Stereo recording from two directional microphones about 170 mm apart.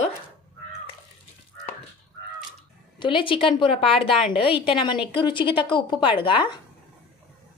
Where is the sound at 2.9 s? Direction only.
30° left (ahead or behind).